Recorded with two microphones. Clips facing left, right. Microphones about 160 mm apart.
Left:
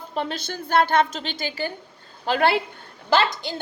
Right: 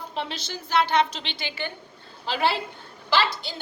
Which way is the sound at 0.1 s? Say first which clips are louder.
Left 6 dB; 50° left (ahead or behind).